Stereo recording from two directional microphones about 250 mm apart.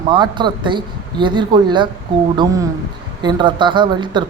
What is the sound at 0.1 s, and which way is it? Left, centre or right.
Speech, centre.